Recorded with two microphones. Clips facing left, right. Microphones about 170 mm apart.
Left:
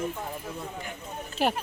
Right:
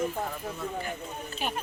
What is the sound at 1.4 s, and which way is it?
Speech, 90° left.